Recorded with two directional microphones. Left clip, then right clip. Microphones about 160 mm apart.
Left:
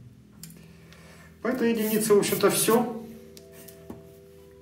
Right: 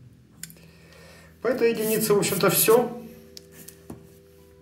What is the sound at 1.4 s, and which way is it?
A man's voice, 25° right (ahead or behind).